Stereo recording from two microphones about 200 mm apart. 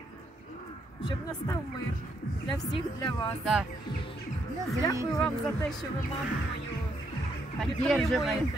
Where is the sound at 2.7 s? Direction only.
20° left (ahead or behind).